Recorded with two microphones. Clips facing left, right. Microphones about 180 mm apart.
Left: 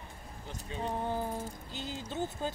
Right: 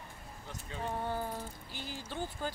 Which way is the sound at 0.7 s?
20° left (ahead or behind).